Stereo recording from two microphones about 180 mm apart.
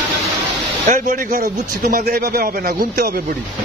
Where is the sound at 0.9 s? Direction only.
45° right (ahead or behind).